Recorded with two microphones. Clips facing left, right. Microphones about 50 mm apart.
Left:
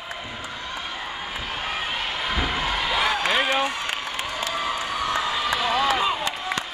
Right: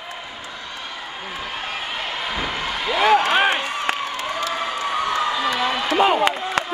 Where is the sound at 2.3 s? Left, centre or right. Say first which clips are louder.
Left 2 dB; centre.